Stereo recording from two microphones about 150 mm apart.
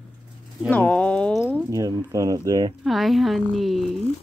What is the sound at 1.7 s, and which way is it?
Speech, 20° right (ahead or behind).